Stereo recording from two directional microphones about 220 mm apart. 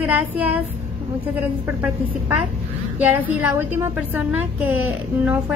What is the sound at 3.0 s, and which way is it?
Speech, 10° right (ahead or behind).